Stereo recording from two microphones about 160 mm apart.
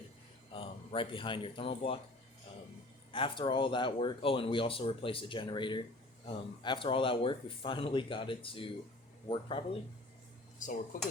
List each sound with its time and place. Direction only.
0.5 s speech: 35° left (ahead or behind)
3.1 s speech: 35° left (ahead or behind)
10.6 s speech: 55° left (ahead or behind)